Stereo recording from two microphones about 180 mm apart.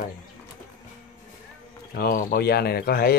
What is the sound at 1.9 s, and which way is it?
Speech, 55° left (ahead or behind).